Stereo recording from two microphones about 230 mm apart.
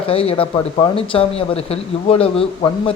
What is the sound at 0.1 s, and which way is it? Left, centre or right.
Speech, left.